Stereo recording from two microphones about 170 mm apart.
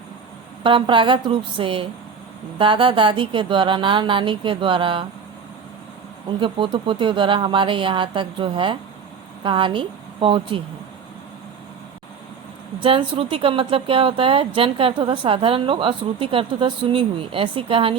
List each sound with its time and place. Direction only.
0.6 s speech: 30° right (ahead or behind)
6.4 s speech: 30° right (ahead or behind)
12.8 s speech: 30° right (ahead or behind)